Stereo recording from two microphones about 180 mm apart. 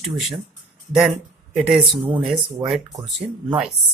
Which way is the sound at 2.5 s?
20° right (ahead or behind).